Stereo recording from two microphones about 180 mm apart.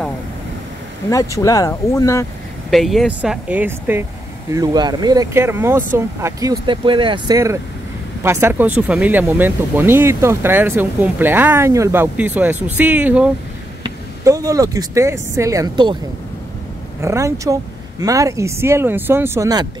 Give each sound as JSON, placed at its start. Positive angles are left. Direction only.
{"t": 1.1, "sound": "speech", "side_deg": 20}
{"t": 2.7, "sound": "speech", "side_deg": 0}
{"t": 4.5, "sound": "speech", "side_deg": -20}
{"t": 7.3, "sound": "speech", "side_deg": -15}
{"t": 13.8, "sound": "speech", "side_deg": -20}
{"t": 17.0, "sound": "speech", "side_deg": -15}